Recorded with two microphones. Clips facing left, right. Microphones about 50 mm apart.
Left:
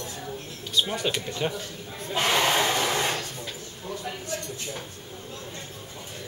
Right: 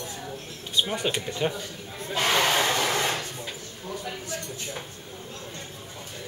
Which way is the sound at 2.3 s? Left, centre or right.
Centre.